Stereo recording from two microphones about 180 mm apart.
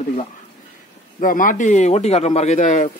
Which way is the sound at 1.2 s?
50° left (ahead or behind).